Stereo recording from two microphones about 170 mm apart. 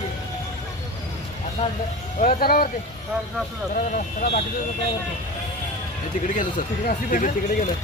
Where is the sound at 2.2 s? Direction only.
55° left (ahead or behind).